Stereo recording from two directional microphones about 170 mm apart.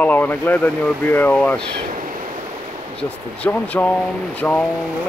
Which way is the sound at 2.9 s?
10° left (ahead or behind).